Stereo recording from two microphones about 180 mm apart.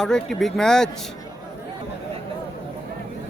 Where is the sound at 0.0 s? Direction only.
5° left (ahead or behind).